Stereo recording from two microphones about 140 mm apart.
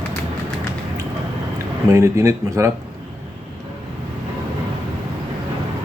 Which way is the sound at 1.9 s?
20° right (ahead or behind).